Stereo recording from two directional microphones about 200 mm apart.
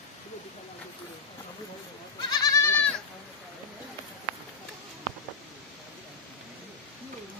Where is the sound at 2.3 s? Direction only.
15° left (ahead or behind).